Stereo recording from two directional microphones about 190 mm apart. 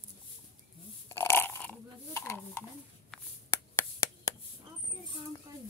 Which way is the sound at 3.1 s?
15° left (ahead or behind).